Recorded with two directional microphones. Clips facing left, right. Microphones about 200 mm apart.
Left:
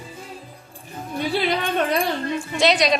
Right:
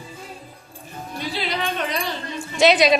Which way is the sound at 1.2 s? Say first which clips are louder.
Left 5 dB; 55° left (ahead or behind).